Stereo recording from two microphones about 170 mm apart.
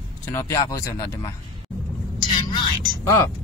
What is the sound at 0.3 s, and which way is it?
Speech, 15° left (ahead or behind).